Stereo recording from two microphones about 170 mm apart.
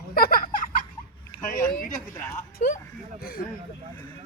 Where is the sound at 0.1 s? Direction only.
55° left (ahead or behind).